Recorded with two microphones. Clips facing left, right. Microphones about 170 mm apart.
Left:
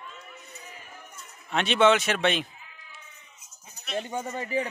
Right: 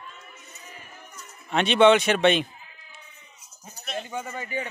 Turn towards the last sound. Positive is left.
turn(degrees=35)  # may be behind; listen again after turning